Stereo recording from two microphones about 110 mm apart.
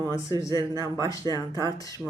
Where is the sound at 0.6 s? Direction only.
35° right (ahead or behind).